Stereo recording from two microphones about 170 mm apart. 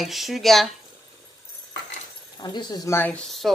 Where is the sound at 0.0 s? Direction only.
Centre (ahead or behind).